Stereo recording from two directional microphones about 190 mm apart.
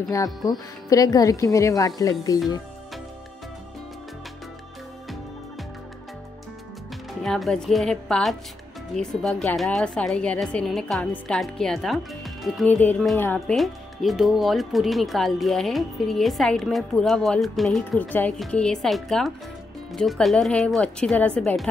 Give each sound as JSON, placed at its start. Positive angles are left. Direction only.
{"t": 0.1, "sound": "speech", "side_deg": 15}
{"t": 7.2, "sound": "a woman's voice", "side_deg": 0}